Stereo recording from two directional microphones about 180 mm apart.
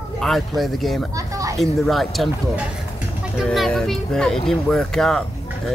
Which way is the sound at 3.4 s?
Centre (ahead or behind).